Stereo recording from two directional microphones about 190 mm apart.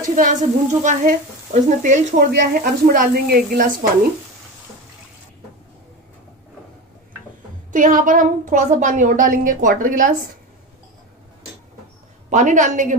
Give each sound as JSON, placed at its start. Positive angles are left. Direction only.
{"t": 0.1, "sound": "a woman's voice", "side_deg": -40}
{"t": 7.7, "sound": "speech", "side_deg": -45}
{"t": 12.3, "sound": "a woman's voice", "side_deg": -40}